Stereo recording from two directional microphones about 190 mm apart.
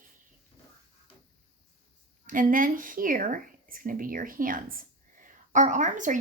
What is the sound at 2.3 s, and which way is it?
Speech, 45° right (ahead or behind).